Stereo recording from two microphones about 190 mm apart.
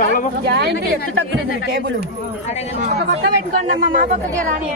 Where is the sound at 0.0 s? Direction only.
45° left (ahead or behind).